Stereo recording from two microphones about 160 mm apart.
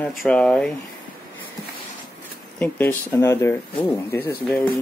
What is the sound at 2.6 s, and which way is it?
Speech, 10° left (ahead or behind).